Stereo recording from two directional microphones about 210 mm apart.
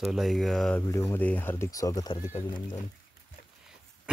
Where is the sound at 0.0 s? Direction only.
Centre (ahead or behind).